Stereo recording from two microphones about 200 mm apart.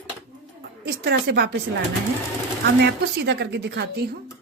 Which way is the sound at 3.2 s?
55° right (ahead or behind).